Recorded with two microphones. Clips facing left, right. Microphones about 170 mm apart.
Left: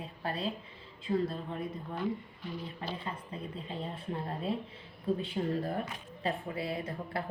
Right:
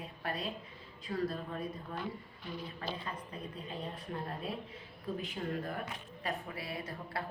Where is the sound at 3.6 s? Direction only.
25° left (ahead or behind).